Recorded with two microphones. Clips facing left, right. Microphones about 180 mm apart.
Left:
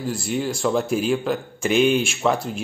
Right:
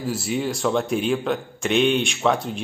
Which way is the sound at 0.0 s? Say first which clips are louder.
Even; centre (ahead or behind).